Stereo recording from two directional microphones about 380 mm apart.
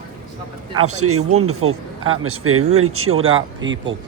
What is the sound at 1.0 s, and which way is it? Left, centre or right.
Speech, right.